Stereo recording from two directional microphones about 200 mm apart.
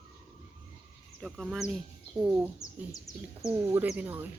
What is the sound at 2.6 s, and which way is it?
Speech, 15° left (ahead or behind).